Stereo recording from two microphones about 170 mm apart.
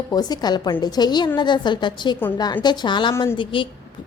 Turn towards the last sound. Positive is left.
turn(degrees=30)  # may be behind; listen again after turning